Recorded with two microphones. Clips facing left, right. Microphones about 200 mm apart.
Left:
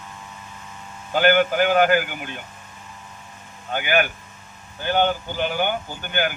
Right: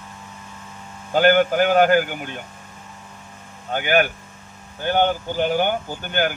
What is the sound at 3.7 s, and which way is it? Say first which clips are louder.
Speech: right 2 dB; 45° right (ahead or behind).